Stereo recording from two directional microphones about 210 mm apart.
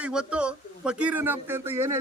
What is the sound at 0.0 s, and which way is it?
Speech, 5° right (ahead or behind).